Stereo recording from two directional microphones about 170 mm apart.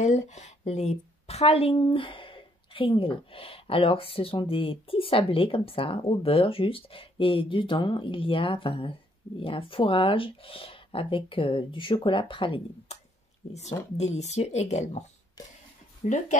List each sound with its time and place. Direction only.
0.0 s a woman's voice: 45° left (ahead or behind)